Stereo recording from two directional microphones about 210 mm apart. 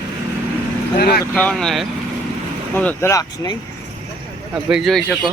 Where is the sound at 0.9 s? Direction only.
45° left (ahead or behind).